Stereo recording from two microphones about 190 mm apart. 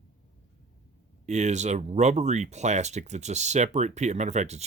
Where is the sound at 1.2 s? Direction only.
35° right (ahead or behind).